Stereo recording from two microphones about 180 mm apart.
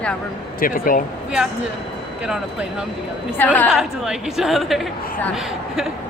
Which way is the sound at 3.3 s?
10° left (ahead or behind).